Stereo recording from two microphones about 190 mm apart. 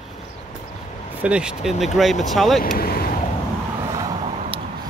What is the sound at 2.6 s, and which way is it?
Speech, 55° left (ahead or behind).